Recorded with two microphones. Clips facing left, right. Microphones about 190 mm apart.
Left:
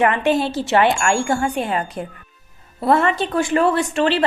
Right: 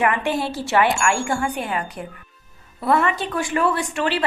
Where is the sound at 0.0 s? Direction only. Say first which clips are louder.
Left 4 dB; 25° left (ahead or behind).